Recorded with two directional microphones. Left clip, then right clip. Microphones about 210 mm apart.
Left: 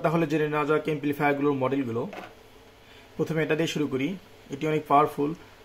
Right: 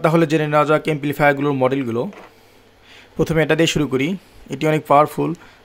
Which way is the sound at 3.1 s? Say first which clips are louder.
Right 9 dB; 55° right (ahead or behind).